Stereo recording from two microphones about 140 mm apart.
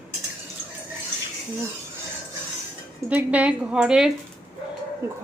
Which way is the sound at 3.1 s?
10° right (ahead or behind).